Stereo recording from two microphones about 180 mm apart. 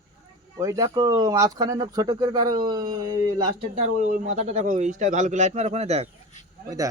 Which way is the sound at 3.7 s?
45° right (ahead or behind).